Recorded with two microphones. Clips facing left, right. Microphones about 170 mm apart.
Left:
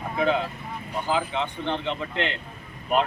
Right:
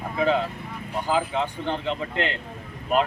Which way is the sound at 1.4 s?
5° right (ahead or behind).